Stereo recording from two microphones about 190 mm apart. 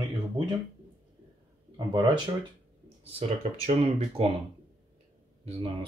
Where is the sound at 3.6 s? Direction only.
35° right (ahead or behind).